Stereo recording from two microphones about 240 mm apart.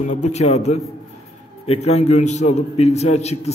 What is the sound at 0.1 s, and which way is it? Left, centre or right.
A man's voice, left.